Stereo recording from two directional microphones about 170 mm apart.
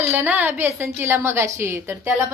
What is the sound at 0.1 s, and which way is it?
A woman's voice, 10° right (ahead or behind).